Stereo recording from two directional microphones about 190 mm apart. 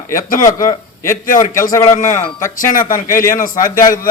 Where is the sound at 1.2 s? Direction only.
45° left (ahead or behind).